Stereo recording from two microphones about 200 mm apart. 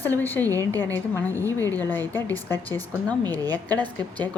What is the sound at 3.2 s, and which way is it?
Speech, 20° right (ahead or behind).